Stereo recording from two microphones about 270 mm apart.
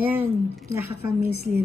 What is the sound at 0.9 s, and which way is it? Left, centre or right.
Speech, right.